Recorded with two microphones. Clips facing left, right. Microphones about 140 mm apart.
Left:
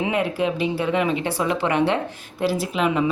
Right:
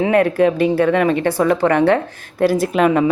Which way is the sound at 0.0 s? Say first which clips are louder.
Right 8 dB; 50° right (ahead or behind).